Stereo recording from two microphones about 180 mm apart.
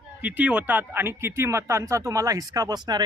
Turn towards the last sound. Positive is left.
turn(degrees=-25)  # may be behind; listen again after turning